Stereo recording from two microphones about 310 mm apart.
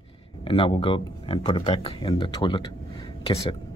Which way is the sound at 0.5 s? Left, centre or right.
Centre.